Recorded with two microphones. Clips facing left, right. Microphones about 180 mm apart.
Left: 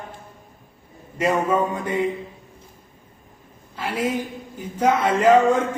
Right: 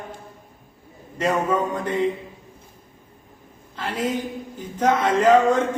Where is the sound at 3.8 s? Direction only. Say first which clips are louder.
Left 1 dB; 10° left (ahead or behind).